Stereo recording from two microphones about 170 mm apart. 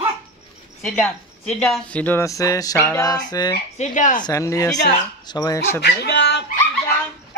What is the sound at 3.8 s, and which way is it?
Speech, 50° left (ahead or behind).